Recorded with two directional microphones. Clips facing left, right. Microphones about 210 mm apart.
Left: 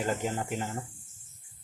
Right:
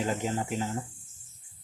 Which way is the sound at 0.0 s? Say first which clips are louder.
Right 1 dB; centre (ahead or behind).